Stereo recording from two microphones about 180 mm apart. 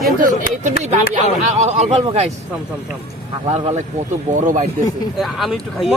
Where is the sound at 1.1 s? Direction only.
40° right (ahead or behind).